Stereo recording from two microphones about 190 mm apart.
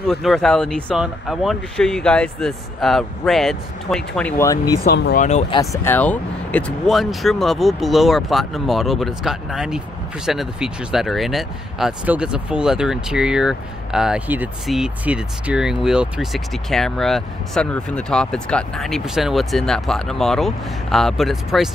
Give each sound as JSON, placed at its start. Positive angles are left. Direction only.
{"t": 0.1, "sound": "speech", "side_deg": 0}
{"t": 4.8, "sound": "speech", "side_deg": 60}
{"t": 5.5, "sound": "speech", "side_deg": 15}